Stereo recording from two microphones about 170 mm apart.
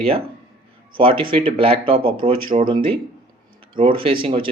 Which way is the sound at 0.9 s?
30° right (ahead or behind).